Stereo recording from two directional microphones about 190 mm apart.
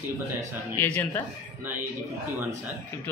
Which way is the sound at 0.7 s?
10° left (ahead or behind).